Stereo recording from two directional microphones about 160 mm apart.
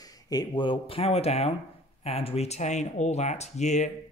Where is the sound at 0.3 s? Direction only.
25° left (ahead or behind).